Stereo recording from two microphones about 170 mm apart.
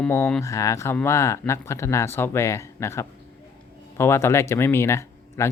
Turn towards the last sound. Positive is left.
turn(degrees=15)  # may be behind; listen again after turning